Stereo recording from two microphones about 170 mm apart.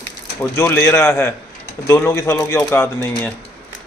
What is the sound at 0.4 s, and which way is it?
Speech, 15° left (ahead or behind).